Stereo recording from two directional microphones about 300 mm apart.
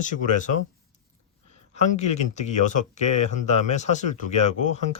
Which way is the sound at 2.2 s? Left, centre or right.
Left.